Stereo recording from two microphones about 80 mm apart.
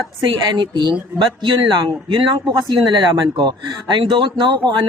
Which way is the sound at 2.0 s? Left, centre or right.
Right.